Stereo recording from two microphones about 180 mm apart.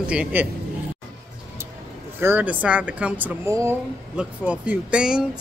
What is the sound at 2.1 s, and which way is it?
Speech, 10° right (ahead or behind).